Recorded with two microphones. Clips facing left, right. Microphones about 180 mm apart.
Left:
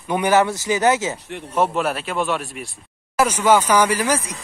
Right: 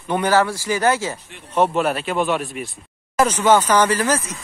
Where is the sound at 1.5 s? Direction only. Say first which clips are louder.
Right 2 dB; centre (ahead or behind).